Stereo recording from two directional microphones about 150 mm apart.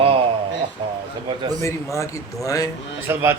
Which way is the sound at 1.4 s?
25° right (ahead or behind).